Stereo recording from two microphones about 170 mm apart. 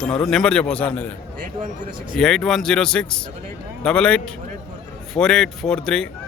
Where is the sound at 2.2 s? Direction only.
Centre (ahead or behind).